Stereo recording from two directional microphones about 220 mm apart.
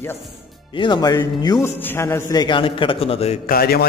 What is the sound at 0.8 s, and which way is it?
A man's voice, 20° left (ahead or behind).